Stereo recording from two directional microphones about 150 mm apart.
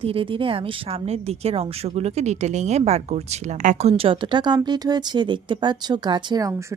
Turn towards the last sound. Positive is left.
turn(degrees=-30)  # may be behind; listen again after turning